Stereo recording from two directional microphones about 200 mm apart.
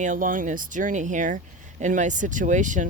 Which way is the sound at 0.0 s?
40° right (ahead or behind).